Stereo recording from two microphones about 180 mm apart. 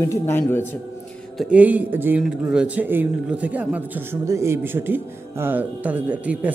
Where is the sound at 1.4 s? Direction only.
10° right (ahead or behind).